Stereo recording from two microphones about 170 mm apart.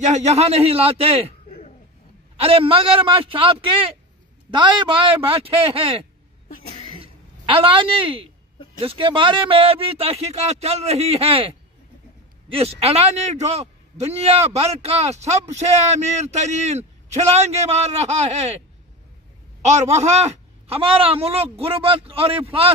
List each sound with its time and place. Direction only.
0.0 s a man's voice: 40° right (ahead or behind)
2.4 s a man's voice: 35° right (ahead or behind)
7.0 s a sound: 30° right (ahead or behind)
8.8 s a man's voice: 30° right (ahead or behind)
12.8 s a man's voice: 40° right (ahead or behind)
19.6 s a man's voice: 40° right (ahead or behind)